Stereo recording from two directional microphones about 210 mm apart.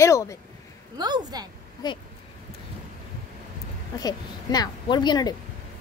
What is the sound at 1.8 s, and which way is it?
Speech, 20° left (ahead or behind).